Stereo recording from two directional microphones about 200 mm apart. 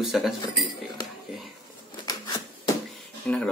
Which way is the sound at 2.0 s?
20° left (ahead or behind).